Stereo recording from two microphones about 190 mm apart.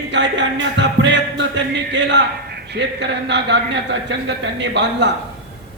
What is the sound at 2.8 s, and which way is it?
Speech, 65° right (ahead or behind).